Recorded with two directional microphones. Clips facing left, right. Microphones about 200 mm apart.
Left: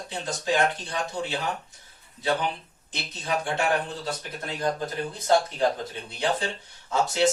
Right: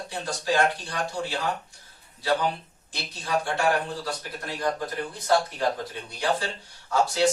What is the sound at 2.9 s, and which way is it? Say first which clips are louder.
Speech: even; 20° left (ahead or behind).